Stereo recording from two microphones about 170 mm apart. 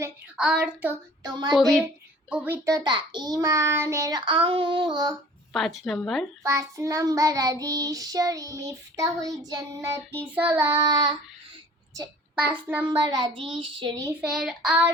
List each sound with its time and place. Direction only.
0.3 s child singing: 5° right (ahead or behind)
1.2 s child singing: 25° right (ahead or behind)
1.5 s speech: centre (ahead or behind)
2.3 s child singing: 10° right (ahead or behind)
2.6 s child singing: 25° right (ahead or behind)
5.5 s speech: centre (ahead or behind)
6.4 s child singing: 20° right (ahead or behind)
12.4 s child singing: 10° right (ahead or behind)
13.1 s child singing: 25° right (ahead or behind)
14.2 s speech: 5° right (ahead or behind)